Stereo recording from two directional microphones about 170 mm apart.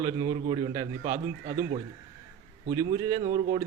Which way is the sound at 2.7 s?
20° right (ahead or behind).